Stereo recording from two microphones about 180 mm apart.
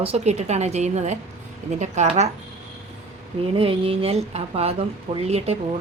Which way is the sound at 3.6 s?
30° right (ahead or behind).